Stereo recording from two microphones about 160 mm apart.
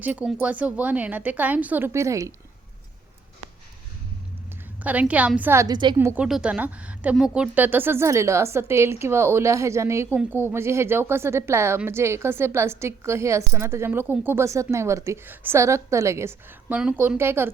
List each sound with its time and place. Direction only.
0.0 s a woman's voice: 10° right (ahead or behind)
4.8 s a woman's voice: 10° right (ahead or behind); by 6.0 s 30° right (ahead or behind)
6.0 s a woman's voice: 15° right (ahead or behind)
6.2 s a woman's voice: 5° right (ahead or behind)